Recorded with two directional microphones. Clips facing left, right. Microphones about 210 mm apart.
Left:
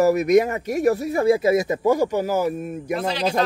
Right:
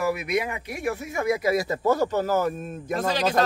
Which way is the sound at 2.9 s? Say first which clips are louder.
Even; 45° right (ahead or behind).